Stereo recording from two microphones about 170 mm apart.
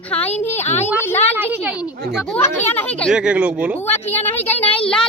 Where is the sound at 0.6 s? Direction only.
40° left (ahead or behind).